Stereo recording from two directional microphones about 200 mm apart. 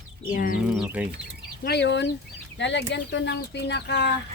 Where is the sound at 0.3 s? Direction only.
45° left (ahead or behind).